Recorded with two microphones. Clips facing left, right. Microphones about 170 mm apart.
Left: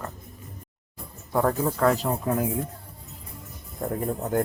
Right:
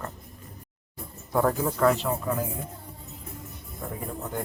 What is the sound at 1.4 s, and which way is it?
Speech, 30° left (ahead or behind).